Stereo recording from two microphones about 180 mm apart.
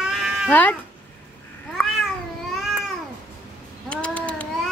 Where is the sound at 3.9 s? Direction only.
5° left (ahead or behind).